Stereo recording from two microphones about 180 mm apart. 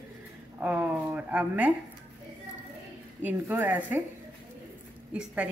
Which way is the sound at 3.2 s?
15° right (ahead or behind).